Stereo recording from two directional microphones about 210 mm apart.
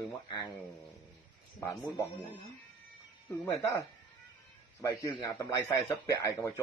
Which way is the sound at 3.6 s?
15° left (ahead or behind).